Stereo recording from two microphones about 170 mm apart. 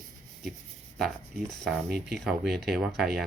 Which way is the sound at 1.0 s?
Centre (ahead or behind).